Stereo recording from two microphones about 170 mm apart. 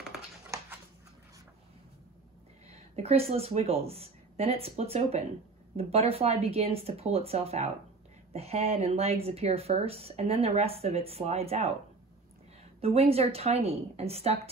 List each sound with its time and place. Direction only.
3.0 s speech: 35° right (ahead or behind)
12.8 s speech: 35° right (ahead or behind)